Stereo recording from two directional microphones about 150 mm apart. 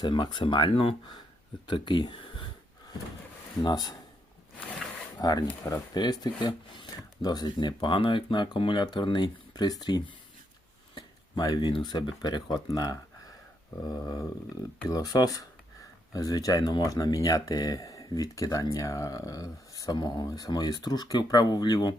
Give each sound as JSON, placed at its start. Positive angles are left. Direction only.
{"t": 0.0, "sound": "speech", "side_deg": 30}
{"t": 3.6, "sound": "speech", "side_deg": 25}
{"t": 5.2, "sound": "speech", "side_deg": 25}